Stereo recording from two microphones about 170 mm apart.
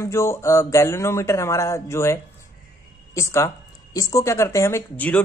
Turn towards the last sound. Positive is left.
turn(degrees=10)  # may be behind; listen again after turning